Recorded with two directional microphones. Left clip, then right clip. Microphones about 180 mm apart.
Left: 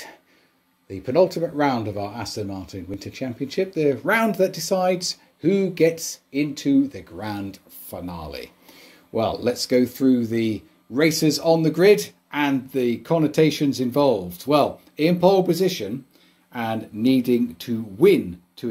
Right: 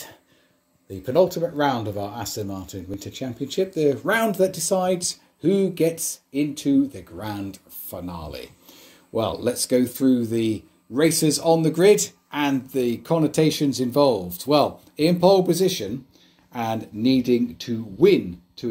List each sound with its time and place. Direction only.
1.0 s speech: 10° left (ahead or behind)